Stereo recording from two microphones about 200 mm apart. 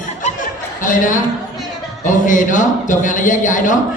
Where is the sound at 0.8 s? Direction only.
40° left (ahead or behind).